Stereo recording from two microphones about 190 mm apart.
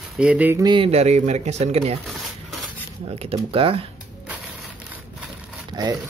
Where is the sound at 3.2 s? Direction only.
30° right (ahead or behind).